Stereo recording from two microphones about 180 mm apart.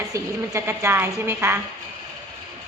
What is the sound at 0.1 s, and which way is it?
A woman's voice, 15° right (ahead or behind).